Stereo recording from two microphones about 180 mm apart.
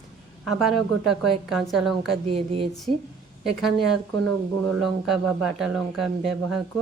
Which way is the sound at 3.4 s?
Centre (ahead or behind).